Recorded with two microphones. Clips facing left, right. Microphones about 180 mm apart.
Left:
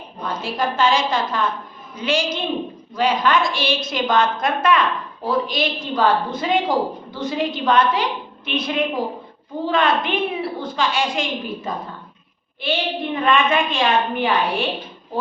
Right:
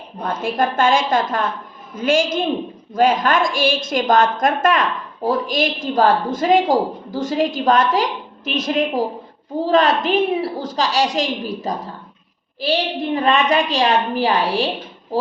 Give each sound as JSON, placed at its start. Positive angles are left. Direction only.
{"t": 0.2, "sound": "a woman's voice", "side_deg": -50}